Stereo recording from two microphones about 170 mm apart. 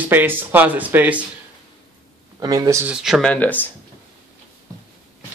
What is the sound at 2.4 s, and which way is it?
Speech, 20° right (ahead or behind).